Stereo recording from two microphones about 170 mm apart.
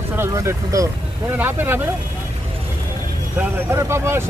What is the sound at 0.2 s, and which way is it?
Speech, 15° right (ahead or behind).